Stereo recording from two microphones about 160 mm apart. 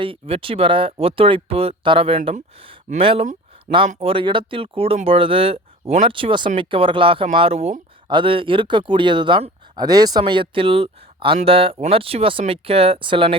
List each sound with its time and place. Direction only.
0.0 s speech: 35° right (ahead or behind)